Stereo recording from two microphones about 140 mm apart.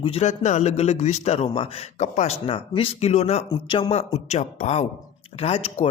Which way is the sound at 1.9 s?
55° left (ahead or behind).